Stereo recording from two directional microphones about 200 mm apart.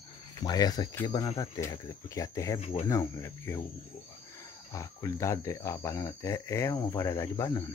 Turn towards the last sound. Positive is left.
turn(degrees=15)  # may be behind; listen again after turning